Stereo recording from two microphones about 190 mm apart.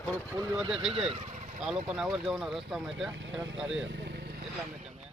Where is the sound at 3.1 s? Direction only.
75° right (ahead or behind).